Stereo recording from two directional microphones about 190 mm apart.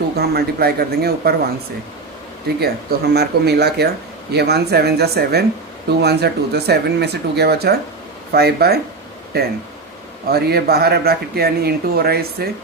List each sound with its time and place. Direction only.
0.2 s speech: 55° right (ahead or behind)
3.1 s speech: 60° right (ahead or behind)